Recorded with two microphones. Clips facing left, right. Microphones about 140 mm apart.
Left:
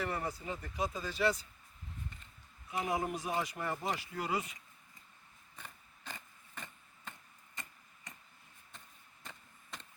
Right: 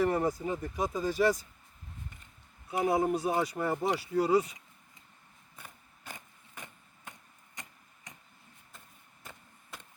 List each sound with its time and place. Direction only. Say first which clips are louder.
0.0 s speech: right 10 dB; 45° right (ahead or behind)
2.8 s speech: right 9 dB; 35° right (ahead or behind)
5.5 s a sound: right 1 dB; 10° right (ahead or behind)
7.5 s tick-tock: right 1 dB; 15° right (ahead or behind)
9.2 s chop: right 2 dB; 10° right (ahead or behind)